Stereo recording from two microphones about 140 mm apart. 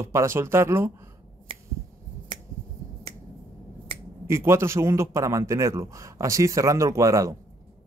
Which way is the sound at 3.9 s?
40° right (ahead or behind).